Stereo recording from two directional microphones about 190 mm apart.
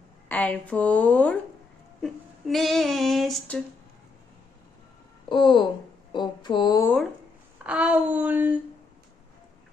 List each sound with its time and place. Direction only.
0.3 s a woman's voice: 10° left (ahead or behind)
2.0 s child singing: centre (ahead or behind)
5.3 s speech: 25° left (ahead or behind)
7.6 s speech: 5° right (ahead or behind)